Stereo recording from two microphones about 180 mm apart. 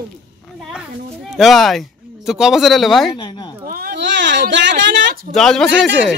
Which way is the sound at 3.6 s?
55° right (ahead or behind).